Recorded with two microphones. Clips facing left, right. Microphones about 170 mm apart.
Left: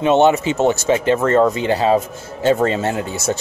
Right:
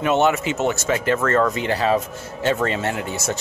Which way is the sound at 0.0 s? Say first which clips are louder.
Left 5 dB; 30° left (ahead or behind).